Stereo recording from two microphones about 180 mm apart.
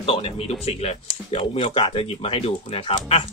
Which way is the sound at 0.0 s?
30° left (ahead or behind).